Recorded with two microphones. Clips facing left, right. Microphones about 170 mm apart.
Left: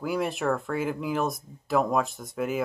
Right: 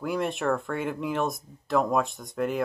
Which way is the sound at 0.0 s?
Centre (ahead or behind).